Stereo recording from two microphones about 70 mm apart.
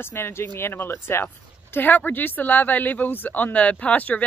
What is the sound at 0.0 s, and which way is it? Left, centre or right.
Speech, left.